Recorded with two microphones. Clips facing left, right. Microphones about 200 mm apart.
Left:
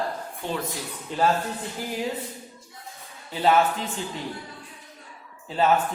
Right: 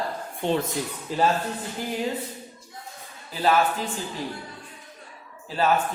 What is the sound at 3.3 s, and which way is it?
Speech, 20° left (ahead or behind).